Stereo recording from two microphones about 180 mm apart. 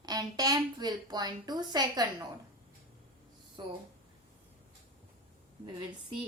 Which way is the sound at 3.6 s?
25° right (ahead or behind).